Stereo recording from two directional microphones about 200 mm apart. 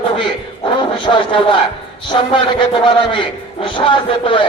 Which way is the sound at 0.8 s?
25° left (ahead or behind).